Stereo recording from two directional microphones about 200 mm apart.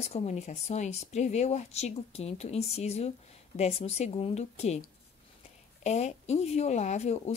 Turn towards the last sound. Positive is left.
turn(degrees=35)  # may be behind; listen again after turning